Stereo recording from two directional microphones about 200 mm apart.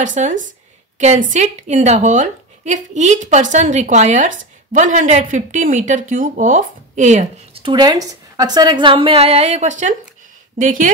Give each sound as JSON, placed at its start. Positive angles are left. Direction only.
{"t": 0.0, "sound": "a woman's voice", "side_deg": -40}
{"t": 7.7, "sound": "a woman's voice", "side_deg": -20}